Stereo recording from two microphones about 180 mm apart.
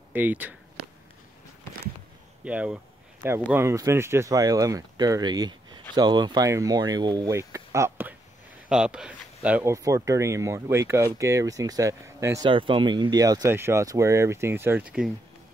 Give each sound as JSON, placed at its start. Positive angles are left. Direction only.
{"t": 0.1, "sound": "speech", "side_deg": -10}
{"t": 2.4, "sound": "speech", "side_deg": -5}
{"t": 12.4, "sound": "speech", "side_deg": -30}